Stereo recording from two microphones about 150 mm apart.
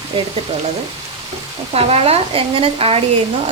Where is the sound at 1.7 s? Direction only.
45° right (ahead or behind).